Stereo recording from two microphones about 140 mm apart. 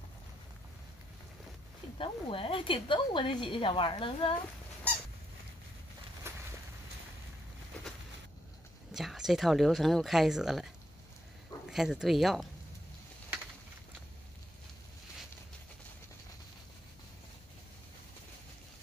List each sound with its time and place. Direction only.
2.0 s speech: 40° left (ahead or behind)
6.3 s a sound: 20° right (ahead or behind)
8.9 s speech: centre (ahead or behind)
11.7 s speech: 5° right (ahead or behind)